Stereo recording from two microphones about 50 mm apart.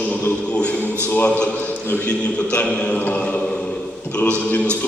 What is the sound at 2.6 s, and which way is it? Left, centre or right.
Speech, left.